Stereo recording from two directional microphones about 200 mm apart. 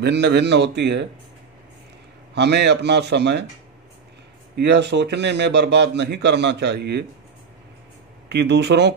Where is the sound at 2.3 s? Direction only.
60° right (ahead or behind).